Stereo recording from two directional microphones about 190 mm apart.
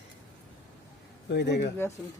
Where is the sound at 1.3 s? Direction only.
60° left (ahead or behind).